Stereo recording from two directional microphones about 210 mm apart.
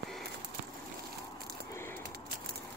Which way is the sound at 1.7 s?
10° left (ahead or behind).